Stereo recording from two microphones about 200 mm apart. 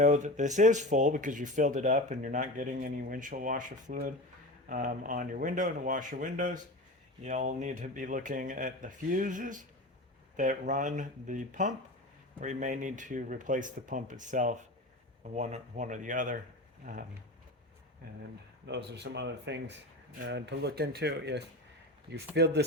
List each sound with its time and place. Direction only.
0.0 s speech: 40° right (ahead or behind)
18.6 s speech: 60° right (ahead or behind)